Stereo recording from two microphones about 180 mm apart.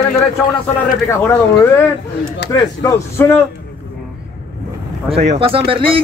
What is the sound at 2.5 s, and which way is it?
Speech, 20° left (ahead or behind).